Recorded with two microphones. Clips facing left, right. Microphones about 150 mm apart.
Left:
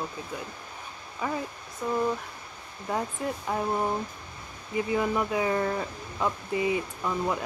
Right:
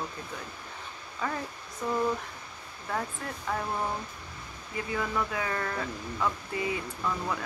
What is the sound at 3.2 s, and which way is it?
Speech, 20° left (ahead or behind).